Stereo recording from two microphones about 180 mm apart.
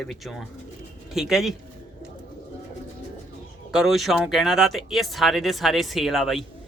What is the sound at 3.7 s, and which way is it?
A man's voice, centre (ahead or behind).